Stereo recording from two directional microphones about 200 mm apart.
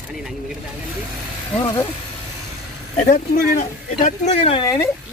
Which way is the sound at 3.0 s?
40° left (ahead or behind).